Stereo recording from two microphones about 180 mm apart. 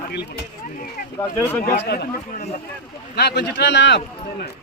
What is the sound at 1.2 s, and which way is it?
Speech, 15° left (ahead or behind).